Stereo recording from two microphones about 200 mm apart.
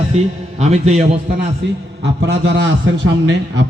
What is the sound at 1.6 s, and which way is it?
Speech, 60° right (ahead or behind).